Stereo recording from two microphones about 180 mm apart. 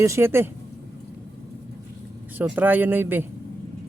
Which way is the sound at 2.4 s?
10° right (ahead or behind).